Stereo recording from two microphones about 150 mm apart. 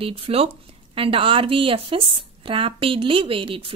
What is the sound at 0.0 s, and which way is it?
A woman's voice, 40° right (ahead or behind).